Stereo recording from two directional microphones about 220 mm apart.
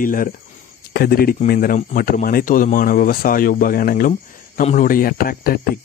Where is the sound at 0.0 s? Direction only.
40° left (ahead or behind).